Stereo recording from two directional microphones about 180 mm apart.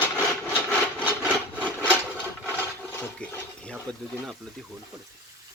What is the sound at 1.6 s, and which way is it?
Wood, 5° left (ahead or behind).